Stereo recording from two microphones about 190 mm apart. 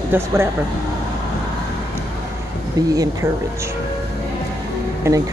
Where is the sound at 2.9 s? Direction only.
20° right (ahead or behind).